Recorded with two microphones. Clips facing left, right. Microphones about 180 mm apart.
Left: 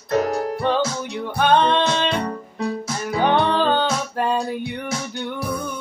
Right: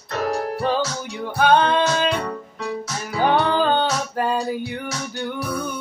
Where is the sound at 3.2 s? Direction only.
5° right (ahead or behind).